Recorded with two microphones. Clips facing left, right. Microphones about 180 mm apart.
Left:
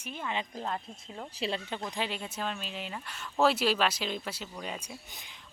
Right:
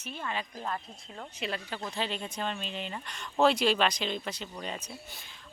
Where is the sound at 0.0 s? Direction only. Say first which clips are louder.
Left 1 dB; 15° left (ahead or behind).